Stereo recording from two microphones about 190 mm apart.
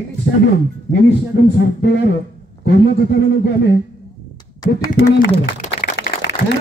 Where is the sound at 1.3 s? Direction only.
65° left (ahead or behind).